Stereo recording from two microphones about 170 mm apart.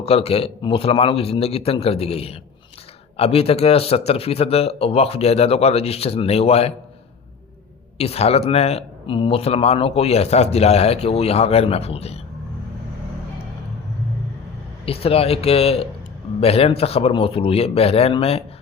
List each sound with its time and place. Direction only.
0.0 s speech: 35° left (ahead or behind)
7.9 s speech: 35° left (ahead or behind)
14.8 s speech: 35° left (ahead or behind)